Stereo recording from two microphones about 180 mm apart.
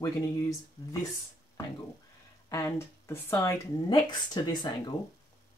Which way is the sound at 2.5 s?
15° left (ahead or behind).